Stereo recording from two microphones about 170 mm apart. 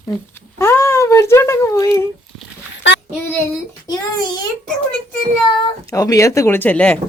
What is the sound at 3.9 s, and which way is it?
Speech, 25° left (ahead or behind).